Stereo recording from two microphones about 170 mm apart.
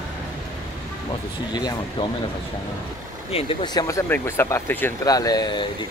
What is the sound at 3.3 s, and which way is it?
Speech, 30° left (ahead or behind).